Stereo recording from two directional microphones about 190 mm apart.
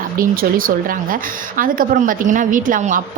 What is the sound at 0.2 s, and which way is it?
Speech, 50° right (ahead or behind).